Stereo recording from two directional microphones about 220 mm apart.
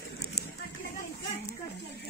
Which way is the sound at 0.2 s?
45° left (ahead or behind).